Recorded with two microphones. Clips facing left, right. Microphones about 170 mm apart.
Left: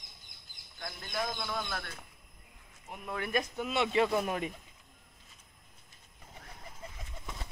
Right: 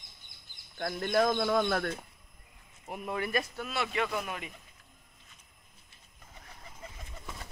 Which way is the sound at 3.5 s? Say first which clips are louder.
Left 4 dB; 20° left (ahead or behind).